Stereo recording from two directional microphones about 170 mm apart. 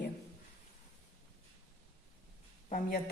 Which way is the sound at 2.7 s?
55° left (ahead or behind).